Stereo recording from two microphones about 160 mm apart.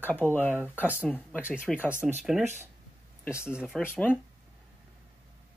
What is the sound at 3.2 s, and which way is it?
Speech, 15° left (ahead or behind).